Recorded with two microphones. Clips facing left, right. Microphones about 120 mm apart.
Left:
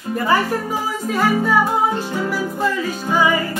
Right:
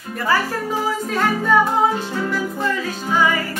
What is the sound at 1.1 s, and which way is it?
Music, 5° left (ahead or behind).